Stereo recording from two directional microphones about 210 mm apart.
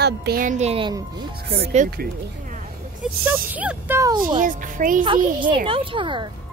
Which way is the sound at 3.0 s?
10° right (ahead or behind).